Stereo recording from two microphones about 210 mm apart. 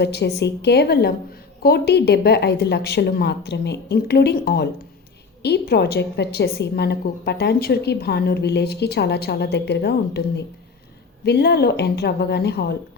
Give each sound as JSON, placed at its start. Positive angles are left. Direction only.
{"t": 0.0, "sound": "a woman's voice", "side_deg": 55}